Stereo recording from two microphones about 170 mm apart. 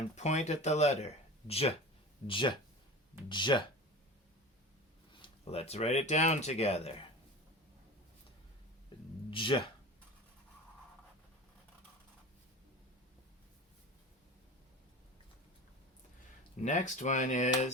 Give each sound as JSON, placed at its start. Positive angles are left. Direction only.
{"t": 0.2, "sound": "speech", "side_deg": 40}
{"t": 5.2, "sound": "speech", "side_deg": 35}
{"t": 8.9, "sound": "a sound", "side_deg": 25}
{"t": 9.3, "sound": "speech", "side_deg": 30}
{"t": 16.6, "sound": "speech", "side_deg": 45}